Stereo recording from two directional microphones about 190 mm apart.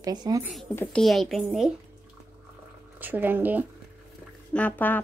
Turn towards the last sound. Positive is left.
turn(degrees=10)  # may be behind; listen again after turning